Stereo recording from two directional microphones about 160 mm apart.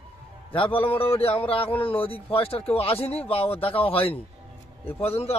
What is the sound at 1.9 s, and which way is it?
Speech, 10° left (ahead or behind).